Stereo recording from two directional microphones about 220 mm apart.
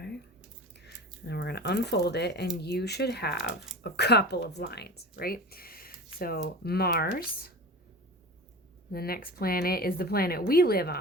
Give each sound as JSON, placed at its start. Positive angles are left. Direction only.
{"t": 0.7, "sound": "a sound", "side_deg": 50}
{"t": 2.6, "sound": "speech", "side_deg": 50}
{"t": 8.9, "sound": "speech", "side_deg": 45}